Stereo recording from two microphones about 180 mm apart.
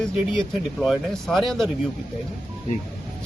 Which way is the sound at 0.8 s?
Centre (ahead or behind).